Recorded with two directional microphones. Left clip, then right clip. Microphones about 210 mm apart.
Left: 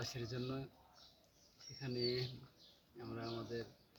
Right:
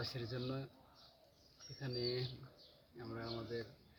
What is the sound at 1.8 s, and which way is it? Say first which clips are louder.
Speech: left 1 dB; 30° right (ahead or behind).